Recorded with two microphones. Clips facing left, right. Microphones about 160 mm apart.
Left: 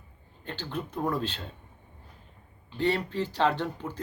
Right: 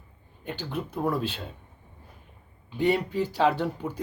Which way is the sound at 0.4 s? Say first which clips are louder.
Right 2 dB; 10° right (ahead or behind).